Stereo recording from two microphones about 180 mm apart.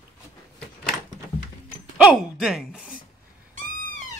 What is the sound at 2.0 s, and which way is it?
Speech, 5° right (ahead or behind).